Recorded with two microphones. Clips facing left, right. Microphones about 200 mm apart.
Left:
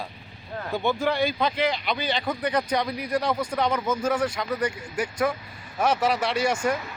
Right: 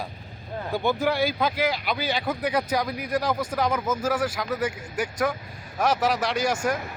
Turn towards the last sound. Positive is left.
turn(degrees=0)  # may be behind; listen again after turning